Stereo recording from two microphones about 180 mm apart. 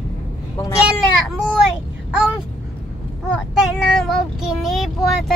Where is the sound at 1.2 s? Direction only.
5° right (ahead or behind).